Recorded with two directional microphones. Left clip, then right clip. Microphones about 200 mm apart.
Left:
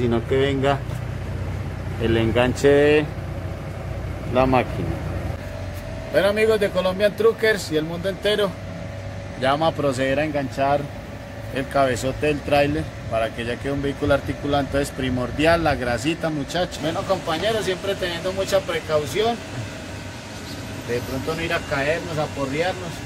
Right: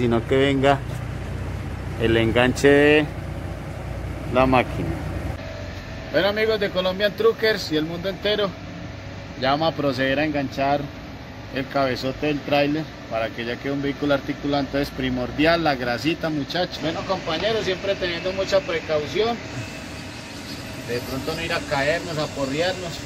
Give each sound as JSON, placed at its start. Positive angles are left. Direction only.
{"t": 0.0, "sound": "speech", "side_deg": -25}
{"t": 2.0, "sound": "speech", "side_deg": -15}
{"t": 4.3, "sound": "speech", "side_deg": 0}
{"t": 6.1, "sound": "speech", "side_deg": 10}
{"t": 21.4, "sound": "speech", "side_deg": 0}